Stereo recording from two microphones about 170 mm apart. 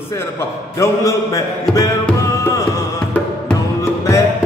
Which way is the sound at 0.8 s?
20° left (ahead or behind).